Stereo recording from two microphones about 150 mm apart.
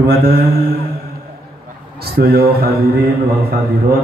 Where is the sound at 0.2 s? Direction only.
90° right.